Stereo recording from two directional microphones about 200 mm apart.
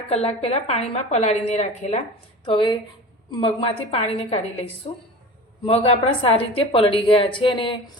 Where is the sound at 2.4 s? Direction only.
25° left (ahead or behind).